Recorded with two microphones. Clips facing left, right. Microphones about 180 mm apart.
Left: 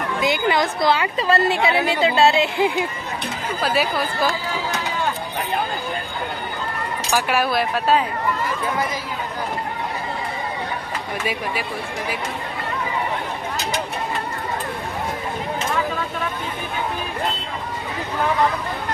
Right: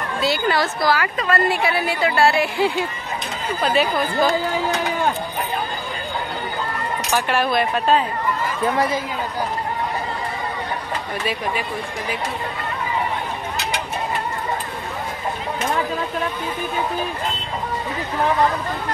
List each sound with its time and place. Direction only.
0.2 s a woman's voice: 15° left (ahead or behind)
3.6 s speech: 5° left (ahead or behind)
7.1 s speech: 10° left (ahead or behind)